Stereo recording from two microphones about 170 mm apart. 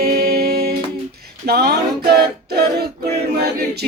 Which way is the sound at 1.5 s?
70° right (ahead or behind).